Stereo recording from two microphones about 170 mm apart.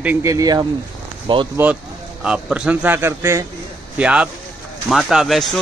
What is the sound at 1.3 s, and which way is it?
Speech, 30° right (ahead or behind).